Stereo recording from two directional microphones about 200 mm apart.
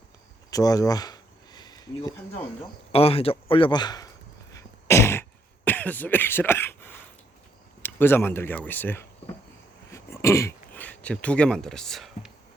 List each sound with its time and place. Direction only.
0.5 s a sound: 20° left (ahead or behind)
2.9 s speech: 30° left (ahead or behind)
4.5 s beatboxing: 15° left (ahead or behind)
5.6 s speech: 10° left (ahead or behind)